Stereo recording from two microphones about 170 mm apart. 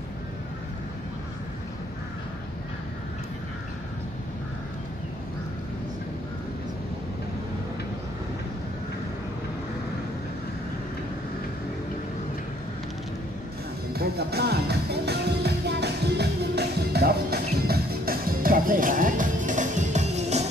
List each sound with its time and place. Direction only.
13.9 s music: 70° right (ahead or behind); by 20.4 s 40° right (ahead or behind)